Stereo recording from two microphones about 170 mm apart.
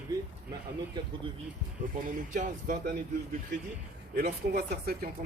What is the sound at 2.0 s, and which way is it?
Speech, 50° right (ahead or behind).